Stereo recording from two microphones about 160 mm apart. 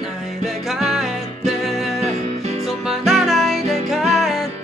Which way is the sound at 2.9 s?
Centre (ahead or behind).